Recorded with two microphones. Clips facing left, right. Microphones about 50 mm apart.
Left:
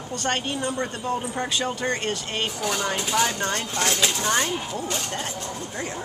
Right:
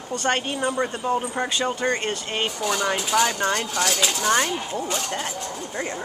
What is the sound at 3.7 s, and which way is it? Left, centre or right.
Speech, left.